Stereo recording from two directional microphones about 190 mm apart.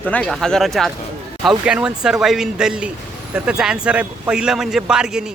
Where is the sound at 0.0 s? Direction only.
5° left (ahead or behind).